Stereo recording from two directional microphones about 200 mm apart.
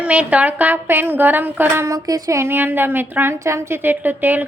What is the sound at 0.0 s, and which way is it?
Speech, 5° right (ahead or behind).